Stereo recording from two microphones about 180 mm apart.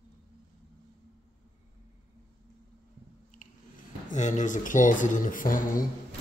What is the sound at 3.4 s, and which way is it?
Squish, 45° left (ahead or behind).